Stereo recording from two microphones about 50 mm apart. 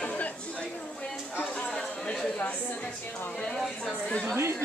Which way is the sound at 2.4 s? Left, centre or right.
Left.